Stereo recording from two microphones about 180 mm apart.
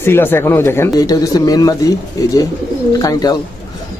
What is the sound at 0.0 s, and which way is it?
A man's voice, 10° left (ahead or behind).